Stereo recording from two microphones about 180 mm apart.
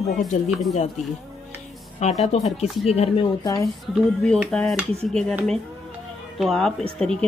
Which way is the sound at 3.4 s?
20° left (ahead or behind).